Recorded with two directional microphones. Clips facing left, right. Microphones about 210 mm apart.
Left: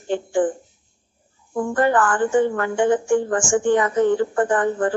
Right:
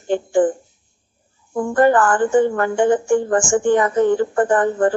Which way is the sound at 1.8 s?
40° right (ahead or behind).